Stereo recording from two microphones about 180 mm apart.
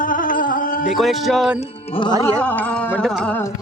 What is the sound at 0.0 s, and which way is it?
Music, 50° left (ahead or behind).